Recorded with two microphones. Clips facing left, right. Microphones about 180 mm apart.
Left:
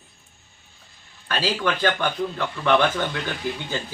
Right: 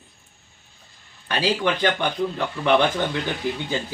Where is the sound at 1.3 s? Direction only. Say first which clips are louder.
Right 2 dB; 15° right (ahead or behind).